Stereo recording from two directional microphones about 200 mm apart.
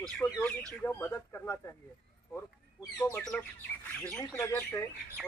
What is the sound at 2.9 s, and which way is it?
Speech, 10° left (ahead or behind).